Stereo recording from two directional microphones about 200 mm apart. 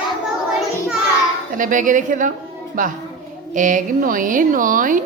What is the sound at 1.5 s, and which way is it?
A woman's voice, 40° right (ahead or behind).